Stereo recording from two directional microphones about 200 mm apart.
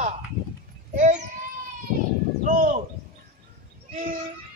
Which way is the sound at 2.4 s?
40° right (ahead or behind).